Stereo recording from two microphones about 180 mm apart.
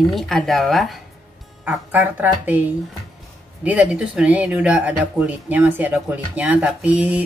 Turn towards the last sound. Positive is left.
turn(degrees=-10)  # may be behind; listen again after turning